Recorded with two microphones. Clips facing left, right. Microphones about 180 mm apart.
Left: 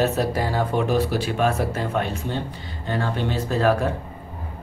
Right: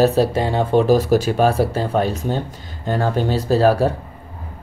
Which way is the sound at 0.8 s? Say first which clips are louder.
Right 7 dB; 40° right (ahead or behind).